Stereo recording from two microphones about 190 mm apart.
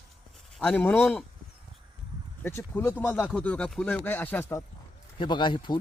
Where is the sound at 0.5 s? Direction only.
5° left (ahead or behind).